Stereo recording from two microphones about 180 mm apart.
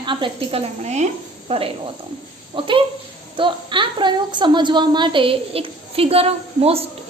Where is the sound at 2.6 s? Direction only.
30° right (ahead or behind).